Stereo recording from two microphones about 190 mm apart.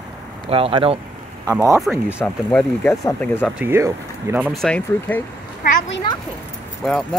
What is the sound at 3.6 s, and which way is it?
Speech, 15° right (ahead or behind).